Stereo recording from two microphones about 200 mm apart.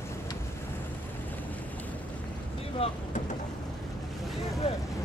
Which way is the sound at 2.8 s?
30° left (ahead or behind).